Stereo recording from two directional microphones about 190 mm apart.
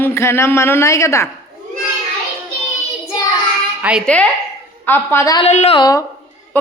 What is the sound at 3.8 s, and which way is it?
Speech, 5° right (ahead or behind).